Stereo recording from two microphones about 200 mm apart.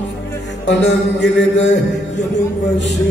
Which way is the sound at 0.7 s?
60° left (ahead or behind).